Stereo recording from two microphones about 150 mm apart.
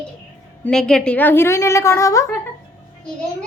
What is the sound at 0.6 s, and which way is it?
A woman's voice, 5° left (ahead or behind).